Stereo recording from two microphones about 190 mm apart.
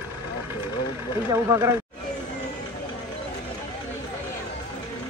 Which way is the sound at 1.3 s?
15° right (ahead or behind).